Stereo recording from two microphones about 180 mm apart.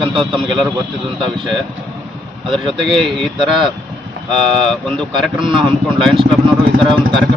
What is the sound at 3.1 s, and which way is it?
A man's voice, centre (ahead or behind).